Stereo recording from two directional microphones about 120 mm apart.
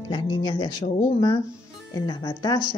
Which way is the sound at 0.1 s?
40° left (ahead or behind).